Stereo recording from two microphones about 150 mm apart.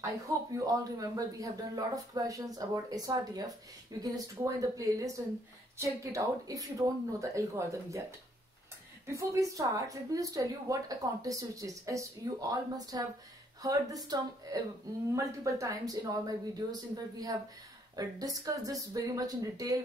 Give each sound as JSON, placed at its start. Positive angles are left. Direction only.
{"t": 0.6, "sound": "speech", "side_deg": -25}
{"t": 9.0, "sound": "speech", "side_deg": -20}